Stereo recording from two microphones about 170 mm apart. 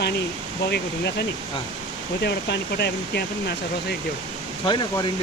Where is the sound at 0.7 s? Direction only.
70° left (ahead or behind).